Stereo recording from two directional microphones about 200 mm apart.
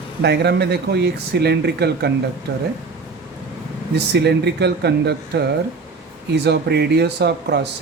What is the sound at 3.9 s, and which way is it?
Speech, 55° right (ahead or behind).